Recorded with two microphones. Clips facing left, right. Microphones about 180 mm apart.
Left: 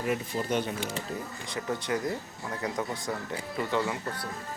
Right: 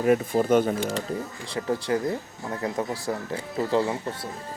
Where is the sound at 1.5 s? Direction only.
30° right (ahead or behind).